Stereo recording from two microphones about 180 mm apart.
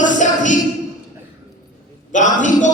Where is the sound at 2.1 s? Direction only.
45° left (ahead or behind).